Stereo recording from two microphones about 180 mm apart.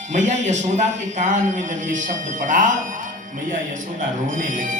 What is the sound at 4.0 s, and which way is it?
Speech, 45° right (ahead or behind).